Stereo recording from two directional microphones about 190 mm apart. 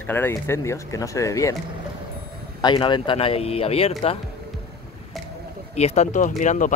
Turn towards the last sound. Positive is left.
turn(degrees=40)  # may be behind; listen again after turning